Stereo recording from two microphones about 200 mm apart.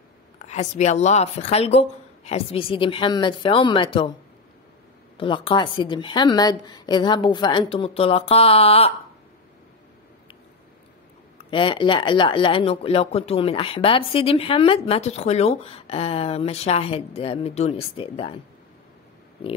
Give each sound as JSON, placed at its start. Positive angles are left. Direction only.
{"t": 0.5, "sound": "speech", "side_deg": 35}
{"t": 5.1, "sound": "speech", "side_deg": 25}
{"t": 11.5, "sound": "speech", "side_deg": 25}